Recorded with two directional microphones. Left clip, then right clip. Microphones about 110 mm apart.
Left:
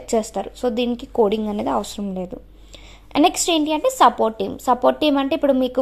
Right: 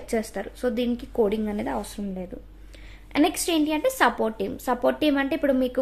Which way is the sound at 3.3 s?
35° left (ahead or behind).